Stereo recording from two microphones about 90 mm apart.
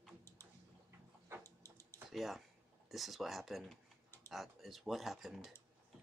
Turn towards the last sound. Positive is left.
turn(degrees=0)  # may be behind; listen again after turning